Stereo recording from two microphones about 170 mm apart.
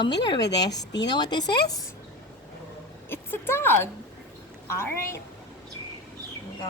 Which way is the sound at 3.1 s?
15° left (ahead or behind).